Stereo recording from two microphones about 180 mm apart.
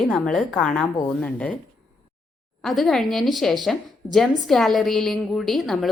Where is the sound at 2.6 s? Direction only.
Centre (ahead or behind).